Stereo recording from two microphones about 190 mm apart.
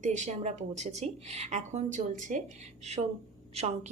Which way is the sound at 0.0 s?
40° right (ahead or behind).